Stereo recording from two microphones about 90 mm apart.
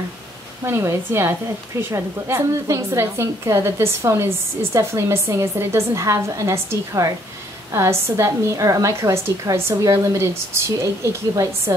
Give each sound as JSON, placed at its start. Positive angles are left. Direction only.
{"t": 0.7, "sound": "a woman's voice", "side_deg": -30}